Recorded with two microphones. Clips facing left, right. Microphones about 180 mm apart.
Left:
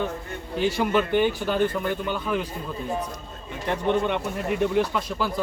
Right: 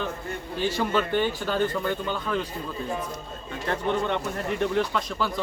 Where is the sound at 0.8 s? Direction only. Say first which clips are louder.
Left 3 dB; 15° left (ahead or behind).